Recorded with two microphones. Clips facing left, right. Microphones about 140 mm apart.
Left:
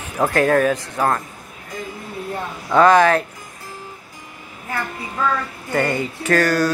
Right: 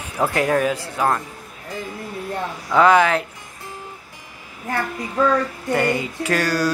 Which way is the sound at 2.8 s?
15° right (ahead or behind).